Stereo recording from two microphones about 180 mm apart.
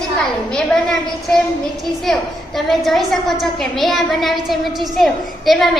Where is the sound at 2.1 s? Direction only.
Centre (ahead or behind).